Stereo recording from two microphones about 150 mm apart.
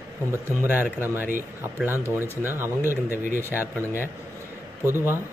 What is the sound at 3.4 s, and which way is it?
Speech, 15° right (ahead or behind).